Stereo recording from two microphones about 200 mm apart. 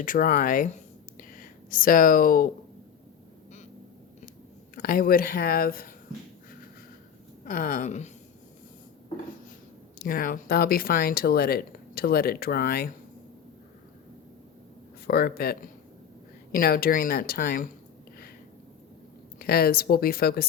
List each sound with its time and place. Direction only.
0.0 s speech: 45° left (ahead or behind)
4.7 s speech: 45° left (ahead or behind)
7.4 s speech: 45° left (ahead or behind)
10.0 s speech: 45° left (ahead or behind)
15.0 s speech: 50° left (ahead or behind)
19.4 s speech: 50° left (ahead or behind)